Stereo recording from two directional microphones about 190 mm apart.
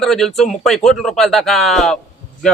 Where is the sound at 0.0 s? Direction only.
Centre (ahead or behind).